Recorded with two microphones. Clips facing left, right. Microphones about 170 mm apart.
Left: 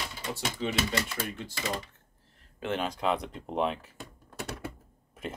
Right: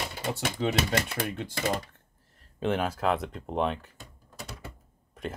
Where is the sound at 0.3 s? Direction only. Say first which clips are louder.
Right 4 dB; 60° right (ahead or behind).